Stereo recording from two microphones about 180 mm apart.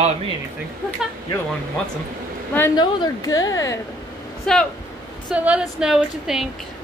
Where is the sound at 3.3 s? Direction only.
90° left.